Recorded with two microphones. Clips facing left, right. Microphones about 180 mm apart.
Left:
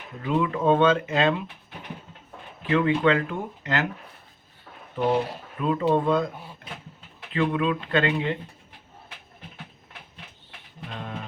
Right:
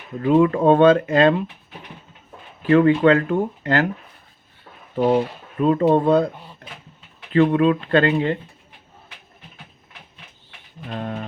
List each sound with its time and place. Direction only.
0.2 s speech: 50° right (ahead or behind)
2.6 s speech: 45° right (ahead or behind)
5.5 s speech: 45° right (ahead or behind)
6.3 s a sound: 5° left (ahead or behind)
7.3 s speech: 45° right (ahead or behind)
10.9 s a sound: 45° right (ahead or behind)